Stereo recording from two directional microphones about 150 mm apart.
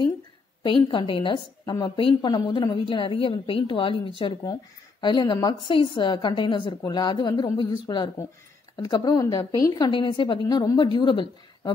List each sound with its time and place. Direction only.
0.7 s a woman's voice: 35° left (ahead or behind)